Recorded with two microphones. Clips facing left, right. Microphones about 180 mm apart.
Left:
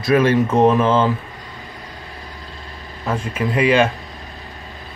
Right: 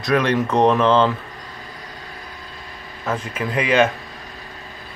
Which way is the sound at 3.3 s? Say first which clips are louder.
Left 2 dB; 30° left (ahead or behind).